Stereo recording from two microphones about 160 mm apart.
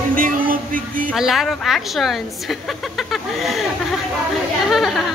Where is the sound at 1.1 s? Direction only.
Centre (ahead or behind).